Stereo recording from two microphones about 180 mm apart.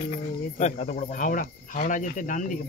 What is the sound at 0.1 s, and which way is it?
Speech, 40° left (ahead or behind).